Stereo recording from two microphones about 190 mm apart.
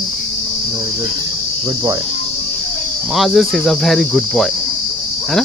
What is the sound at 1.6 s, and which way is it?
Cricket, 20° right (ahead or behind).